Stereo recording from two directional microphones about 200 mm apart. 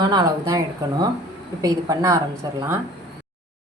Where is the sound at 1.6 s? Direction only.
15° right (ahead or behind).